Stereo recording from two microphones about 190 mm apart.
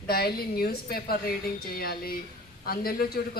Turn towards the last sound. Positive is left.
turn(degrees=50)  # may be behind; listen again after turning